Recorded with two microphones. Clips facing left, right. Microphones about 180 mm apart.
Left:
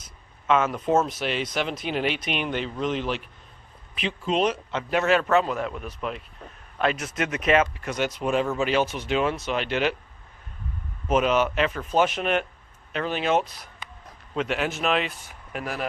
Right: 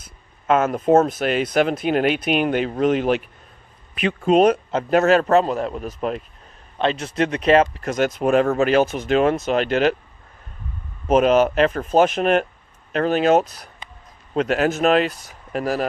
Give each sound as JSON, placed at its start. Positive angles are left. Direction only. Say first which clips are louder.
{"t": 0.0, "sound": "a sound", "louder": "right 2 dB", "side_deg": -50}
{"t": 0.9, "sound": "a man's voice", "louder": "right 9 dB", "side_deg": -50}
{"t": 6.7, "sound": "speech", "louder": "right 5 dB", "side_deg": -30}
{"t": 11.1, "sound": "a man's voice", "louder": "right 6 dB", "side_deg": -40}